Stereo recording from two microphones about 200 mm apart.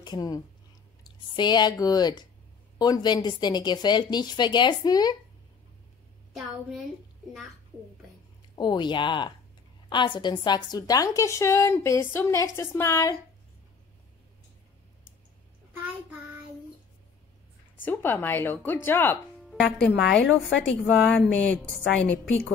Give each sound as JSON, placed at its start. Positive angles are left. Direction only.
{"t": 0.0, "sound": "speech", "side_deg": 20}
{"t": 8.5, "sound": "a woman's voice", "side_deg": 25}
{"t": 17.8, "sound": "a woman's voice", "side_deg": 10}
{"t": 20.4, "sound": "speech", "side_deg": 65}
{"t": 20.8, "sound": "a woman's voice", "side_deg": 0}